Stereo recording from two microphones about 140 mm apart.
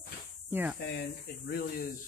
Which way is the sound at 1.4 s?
90° left.